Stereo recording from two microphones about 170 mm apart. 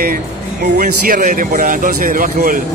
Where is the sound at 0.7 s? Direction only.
50° right (ahead or behind).